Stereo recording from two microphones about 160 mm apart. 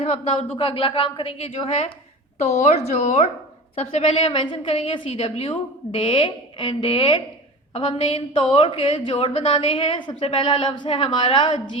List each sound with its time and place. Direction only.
0.0 s a woman's voice: 40° left (ahead or behind)